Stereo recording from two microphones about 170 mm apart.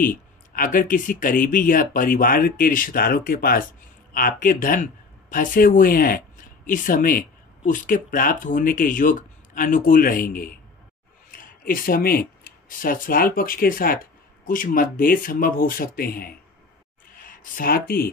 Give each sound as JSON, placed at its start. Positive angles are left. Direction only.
{"t": 0.6, "sound": "speech", "side_deg": 55}